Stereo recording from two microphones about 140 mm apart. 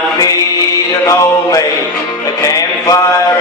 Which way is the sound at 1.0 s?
25° left (ahead or behind).